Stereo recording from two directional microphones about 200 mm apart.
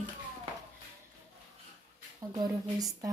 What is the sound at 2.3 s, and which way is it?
Speech, 20° right (ahead or behind).